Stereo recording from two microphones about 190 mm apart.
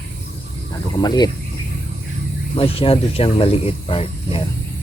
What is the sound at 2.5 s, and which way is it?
Speech, 30° left (ahead or behind).